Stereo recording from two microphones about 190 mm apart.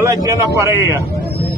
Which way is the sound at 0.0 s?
15° right (ahead or behind).